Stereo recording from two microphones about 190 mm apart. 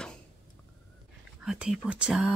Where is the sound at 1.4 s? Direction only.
5° right (ahead or behind).